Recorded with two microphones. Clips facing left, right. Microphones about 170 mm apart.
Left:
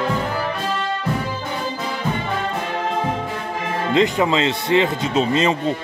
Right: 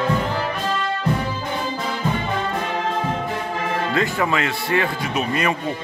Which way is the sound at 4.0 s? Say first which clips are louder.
Left 6 dB; 20° left (ahead or behind).